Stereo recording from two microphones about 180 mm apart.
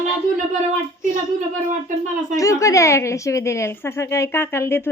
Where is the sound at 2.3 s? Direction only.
15° left (ahead or behind).